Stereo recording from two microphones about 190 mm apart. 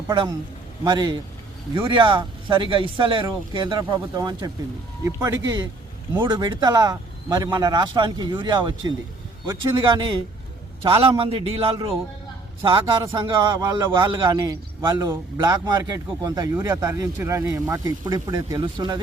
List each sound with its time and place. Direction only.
0.1 s speech: 20° right (ahead or behind)
10.8 s speech: 30° right (ahead or behind)